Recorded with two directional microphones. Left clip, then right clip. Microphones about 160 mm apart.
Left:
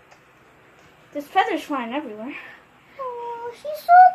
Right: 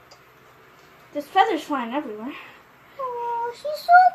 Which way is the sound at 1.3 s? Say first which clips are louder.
Right 1 dB; 20° left (ahead or behind).